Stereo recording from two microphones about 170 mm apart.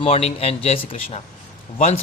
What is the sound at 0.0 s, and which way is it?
A man's voice, 35° left (ahead or behind).